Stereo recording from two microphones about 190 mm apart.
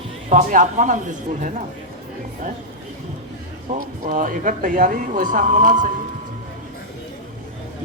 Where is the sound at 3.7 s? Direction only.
40° right (ahead or behind).